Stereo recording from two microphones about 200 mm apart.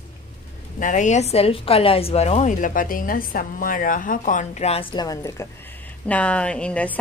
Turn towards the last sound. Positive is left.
turn(degrees=5)  # may be behind; listen again after turning